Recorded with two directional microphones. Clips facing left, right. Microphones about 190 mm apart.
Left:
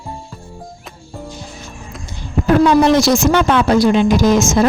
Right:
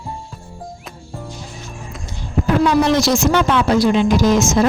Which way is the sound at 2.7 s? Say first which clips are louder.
Left 2 dB; 55° left (ahead or behind).